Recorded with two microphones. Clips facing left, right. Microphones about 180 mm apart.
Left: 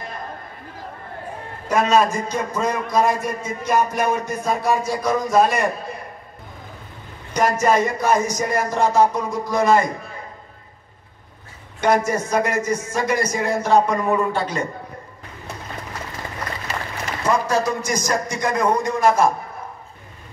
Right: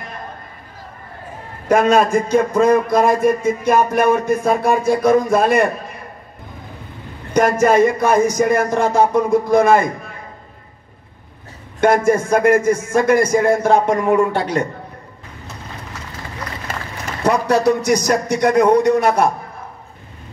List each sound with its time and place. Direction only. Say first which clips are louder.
1.7 s a man's voice: right 4 dB; 60° right (ahead or behind)
7.3 s a man's voice: right 5 dB; 55° right (ahead or behind)
11.8 s a man's voice: right 5 dB; 55° right (ahead or behind)
14.1 s a man's voice: right 5 dB; 65° right (ahead or behind)
17.2 s a man's voice: right 5 dB; 65° right (ahead or behind)